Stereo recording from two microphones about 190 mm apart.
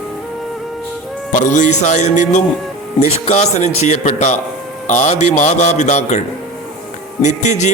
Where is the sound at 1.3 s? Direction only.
40° left (ahead or behind).